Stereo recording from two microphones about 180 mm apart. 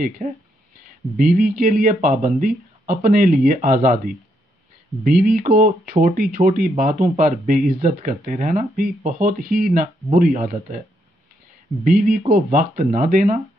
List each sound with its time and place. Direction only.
0.2 s speech: 35° right (ahead or behind)
1.1 s speech: 50° right (ahead or behind)
11.8 s speech: 50° right (ahead or behind)